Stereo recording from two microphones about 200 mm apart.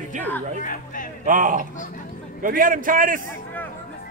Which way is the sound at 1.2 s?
40° right (ahead or behind).